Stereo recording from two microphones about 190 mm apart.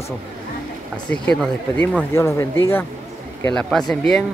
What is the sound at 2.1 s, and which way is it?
Speech, 15° left (ahead or behind).